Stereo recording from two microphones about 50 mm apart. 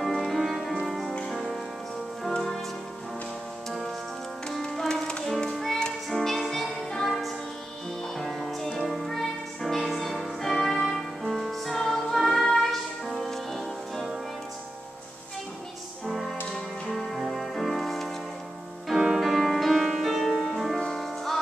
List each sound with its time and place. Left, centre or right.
0.0 s music: centre
4.5 s music: centre
8.2 s music: centre
16.1 s music: centre